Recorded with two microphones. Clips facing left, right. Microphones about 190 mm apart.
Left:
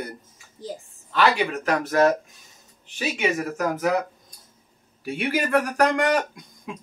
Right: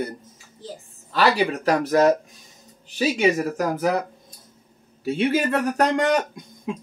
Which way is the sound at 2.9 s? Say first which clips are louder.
Right 5 dB; 35° right (ahead or behind).